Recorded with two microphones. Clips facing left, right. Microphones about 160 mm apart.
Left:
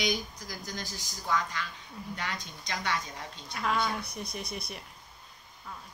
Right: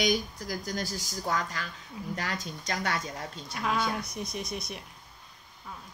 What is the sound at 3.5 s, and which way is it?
A woman's voice, 5° right (ahead or behind).